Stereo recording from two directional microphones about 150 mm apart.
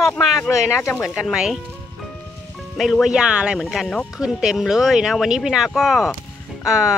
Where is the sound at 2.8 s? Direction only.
Centre (ahead or behind).